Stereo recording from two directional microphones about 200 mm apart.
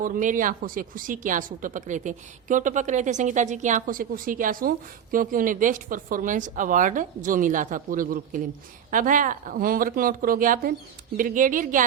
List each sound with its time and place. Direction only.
0.0 s a woman's voice: 40° right (ahead or behind)